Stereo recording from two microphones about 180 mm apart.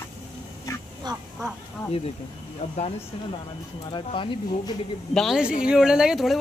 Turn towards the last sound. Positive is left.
turn(degrees=0)  # may be behind; listen again after turning